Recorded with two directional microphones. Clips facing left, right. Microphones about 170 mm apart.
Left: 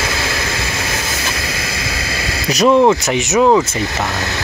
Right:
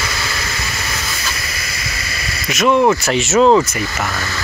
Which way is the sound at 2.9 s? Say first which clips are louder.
Left 1 dB; 20° left (ahead or behind).